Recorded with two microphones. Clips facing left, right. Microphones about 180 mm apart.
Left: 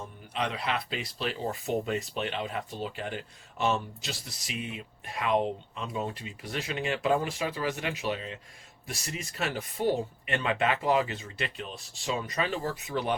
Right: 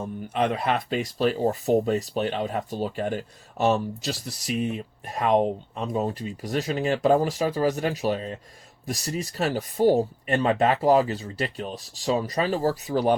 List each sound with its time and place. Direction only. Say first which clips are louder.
0.0 s speech: right 8 dB; 50° right (ahead or behind)